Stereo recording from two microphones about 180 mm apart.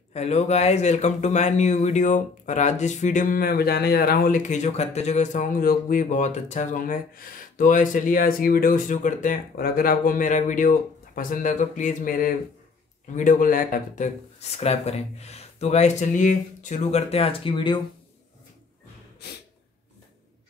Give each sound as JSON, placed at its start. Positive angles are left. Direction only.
{"t": 0.1, "sound": "speech", "side_deg": 40}
{"t": 14.6, "sound": "speech", "side_deg": 35}
{"t": 19.2, "sound": "gasp", "side_deg": 65}